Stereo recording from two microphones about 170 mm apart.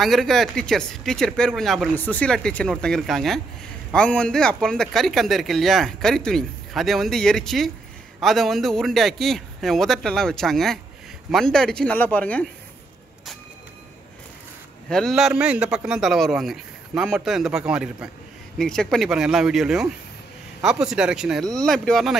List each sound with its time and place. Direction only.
0.0 s speech: centre (ahead or behind)
14.9 s speech: centre (ahead or behind)